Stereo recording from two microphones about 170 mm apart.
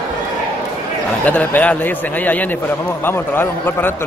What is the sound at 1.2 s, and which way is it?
A man's voice, 10° left (ahead or behind).